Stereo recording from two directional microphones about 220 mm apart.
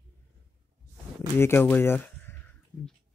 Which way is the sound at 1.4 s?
10° left (ahead or behind).